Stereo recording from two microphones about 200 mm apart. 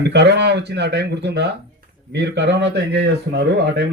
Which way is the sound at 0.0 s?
60° right (ahead or behind).